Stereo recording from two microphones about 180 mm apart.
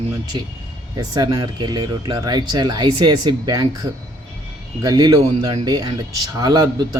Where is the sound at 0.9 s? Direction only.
20° right (ahead or behind).